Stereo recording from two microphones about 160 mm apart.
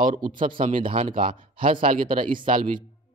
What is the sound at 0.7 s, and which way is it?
Speech, 35° right (ahead or behind).